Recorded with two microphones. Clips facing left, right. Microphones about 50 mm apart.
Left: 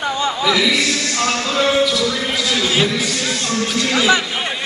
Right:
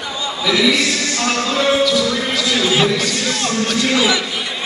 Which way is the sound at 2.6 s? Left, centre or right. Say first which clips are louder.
Right 2 dB; centre.